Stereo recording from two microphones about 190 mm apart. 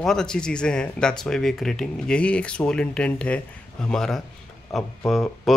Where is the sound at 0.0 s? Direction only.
5° left (ahead or behind).